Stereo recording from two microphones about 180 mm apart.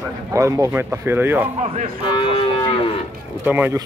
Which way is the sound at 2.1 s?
30° left (ahead or behind).